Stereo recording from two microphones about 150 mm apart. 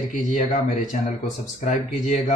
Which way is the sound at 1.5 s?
55° left (ahead or behind).